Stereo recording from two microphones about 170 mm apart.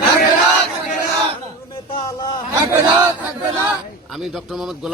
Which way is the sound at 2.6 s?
15° right (ahead or behind).